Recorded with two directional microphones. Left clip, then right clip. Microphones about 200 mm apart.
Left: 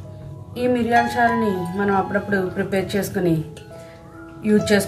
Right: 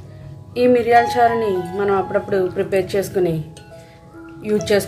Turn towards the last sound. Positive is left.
turn(degrees=-35)  # may be behind; listen again after turning